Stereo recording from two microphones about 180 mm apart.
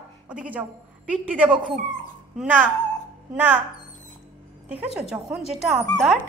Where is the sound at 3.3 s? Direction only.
10° right (ahead or behind).